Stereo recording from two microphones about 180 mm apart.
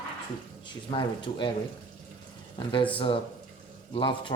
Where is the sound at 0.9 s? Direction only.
25° left (ahead or behind).